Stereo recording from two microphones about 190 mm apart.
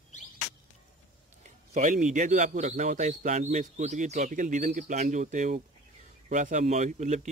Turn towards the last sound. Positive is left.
turn(degrees=-40)  # may be behind; listen again after turning